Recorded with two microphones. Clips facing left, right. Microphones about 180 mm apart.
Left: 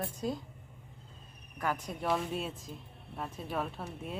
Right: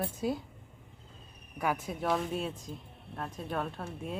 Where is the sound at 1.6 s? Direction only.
10° right (ahead or behind).